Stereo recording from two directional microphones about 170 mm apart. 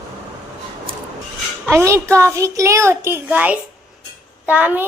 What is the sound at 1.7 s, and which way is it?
A child's voice, 15° right (ahead or behind).